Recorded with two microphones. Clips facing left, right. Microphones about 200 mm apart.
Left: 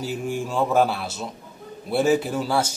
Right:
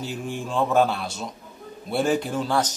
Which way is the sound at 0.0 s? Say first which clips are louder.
Left 3 dB; 5° left (ahead or behind).